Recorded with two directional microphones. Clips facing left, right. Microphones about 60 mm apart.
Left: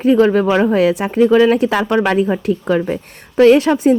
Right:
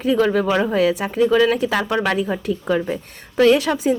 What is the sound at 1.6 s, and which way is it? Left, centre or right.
Speech, left.